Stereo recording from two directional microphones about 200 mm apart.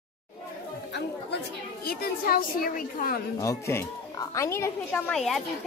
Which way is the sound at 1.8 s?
50° left (ahead or behind).